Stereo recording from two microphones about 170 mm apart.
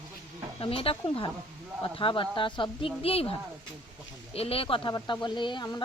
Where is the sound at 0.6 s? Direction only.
30° left (ahead or behind).